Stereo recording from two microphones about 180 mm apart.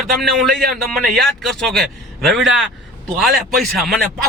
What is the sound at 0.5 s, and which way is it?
Speech, 60° right (ahead or behind).